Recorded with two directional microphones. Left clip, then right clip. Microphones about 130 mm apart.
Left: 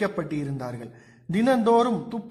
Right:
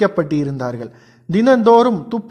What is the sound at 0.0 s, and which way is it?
A man's voice, 35° right (ahead or behind).